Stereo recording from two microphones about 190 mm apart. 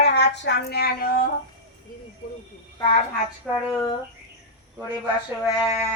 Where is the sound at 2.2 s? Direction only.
45° left (ahead or behind).